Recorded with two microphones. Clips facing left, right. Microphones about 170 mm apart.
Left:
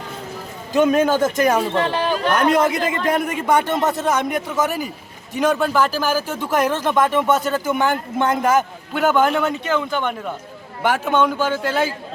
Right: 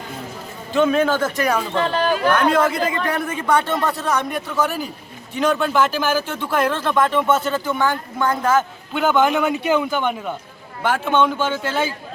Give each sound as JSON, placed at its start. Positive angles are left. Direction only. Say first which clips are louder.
{"t": 1.0, "sound": "speech", "louder": "left 3 dB", "side_deg": 15}
{"t": 2.4, "sound": "a man's voice", "louder": "left 1 dB", "side_deg": 15}
{"t": 8.9, "sound": "a man's voice", "louder": "even", "side_deg": 5}
{"t": 11.0, "sound": "a man's voice", "louder": "right 1 dB", "side_deg": 10}